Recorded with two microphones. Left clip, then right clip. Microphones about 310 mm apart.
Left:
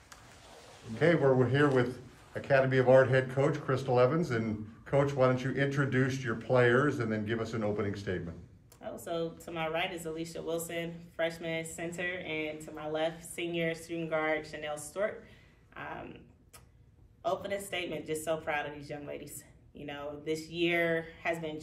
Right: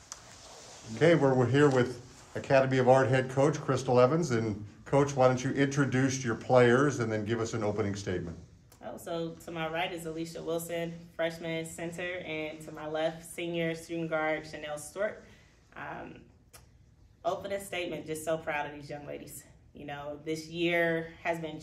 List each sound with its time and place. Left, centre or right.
0.9 s speech: right
8.8 s speech: centre
17.2 s speech: centre